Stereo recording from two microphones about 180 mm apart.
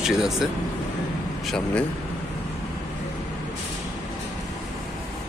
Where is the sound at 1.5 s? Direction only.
5° left (ahead or behind).